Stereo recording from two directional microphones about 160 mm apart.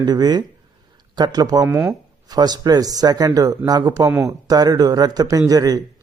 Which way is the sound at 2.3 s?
25° right (ahead or behind).